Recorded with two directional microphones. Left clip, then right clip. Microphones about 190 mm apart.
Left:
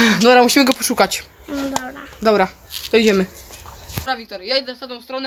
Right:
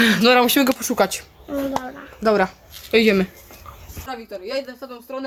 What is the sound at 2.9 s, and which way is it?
Speech, 45° left (ahead or behind).